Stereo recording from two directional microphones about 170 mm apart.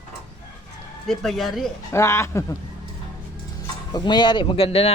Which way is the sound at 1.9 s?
15° left (ahead or behind).